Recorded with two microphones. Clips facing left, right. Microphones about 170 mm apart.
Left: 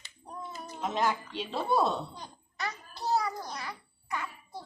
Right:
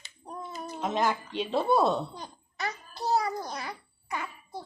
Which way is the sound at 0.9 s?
55° right (ahead or behind).